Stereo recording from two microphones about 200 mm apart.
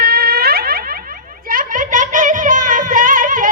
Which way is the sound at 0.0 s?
50° right (ahead or behind).